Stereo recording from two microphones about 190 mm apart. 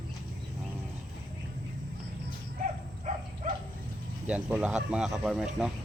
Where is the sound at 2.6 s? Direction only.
40° right (ahead or behind).